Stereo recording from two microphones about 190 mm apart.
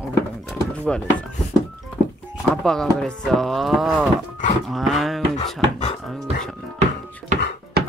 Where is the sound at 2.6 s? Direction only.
5° left (ahead or behind).